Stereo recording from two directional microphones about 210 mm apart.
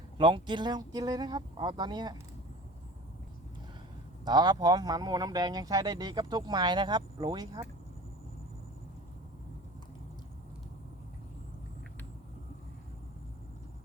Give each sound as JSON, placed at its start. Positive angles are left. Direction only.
{"t": 0.2, "sound": "speech", "side_deg": -20}
{"t": 4.3, "sound": "speech", "side_deg": -20}